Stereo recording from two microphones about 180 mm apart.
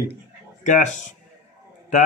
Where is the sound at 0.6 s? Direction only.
45° left (ahead or behind).